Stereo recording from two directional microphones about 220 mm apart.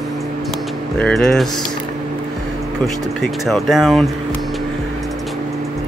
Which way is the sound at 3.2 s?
Centre (ahead or behind).